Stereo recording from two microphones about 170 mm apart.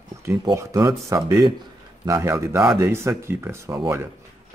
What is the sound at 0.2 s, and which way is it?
Speech, 15° right (ahead or behind).